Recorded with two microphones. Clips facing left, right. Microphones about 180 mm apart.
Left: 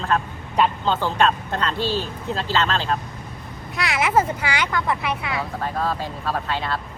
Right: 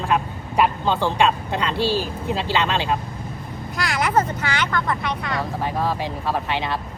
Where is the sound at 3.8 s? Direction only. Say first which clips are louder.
Left 1 dB; centre (ahead or behind).